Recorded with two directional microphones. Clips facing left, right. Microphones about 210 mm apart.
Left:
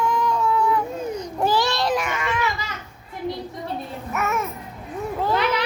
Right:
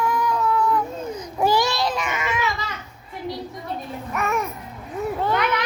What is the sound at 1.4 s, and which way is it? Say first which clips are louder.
Baby cry: right 1 dB; 10° right (ahead or behind).